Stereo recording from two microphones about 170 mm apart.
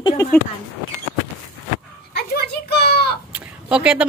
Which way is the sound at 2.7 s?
70° left (ahead or behind).